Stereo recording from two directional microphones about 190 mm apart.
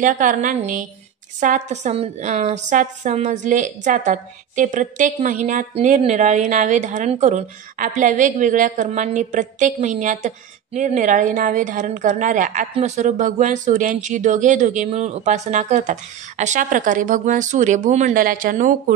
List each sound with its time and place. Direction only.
0.0 s a woman's voice: 45° right (ahead or behind)